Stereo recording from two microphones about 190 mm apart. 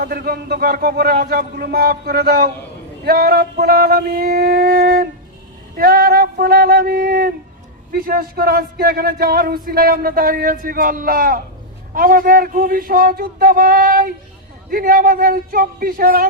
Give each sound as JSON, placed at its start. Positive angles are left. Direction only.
{"t": 0.0, "sound": "speech", "side_deg": -55}